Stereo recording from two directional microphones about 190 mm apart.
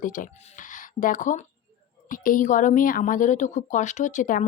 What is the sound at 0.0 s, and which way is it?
A woman's voice, 45° left (ahead or behind).